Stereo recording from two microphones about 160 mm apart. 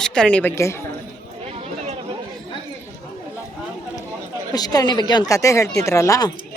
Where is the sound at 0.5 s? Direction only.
15° left (ahead or behind).